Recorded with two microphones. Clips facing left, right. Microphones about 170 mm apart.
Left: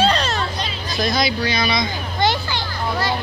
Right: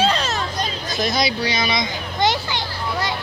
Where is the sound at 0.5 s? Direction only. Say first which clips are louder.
Right 1 dB; 45° right (ahead or behind).